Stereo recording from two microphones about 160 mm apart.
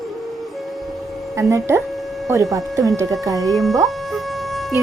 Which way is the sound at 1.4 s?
20° right (ahead or behind).